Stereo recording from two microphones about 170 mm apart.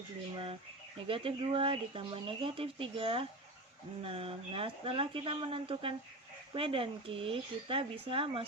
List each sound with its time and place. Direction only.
1.0 s speech: 30° right (ahead or behind)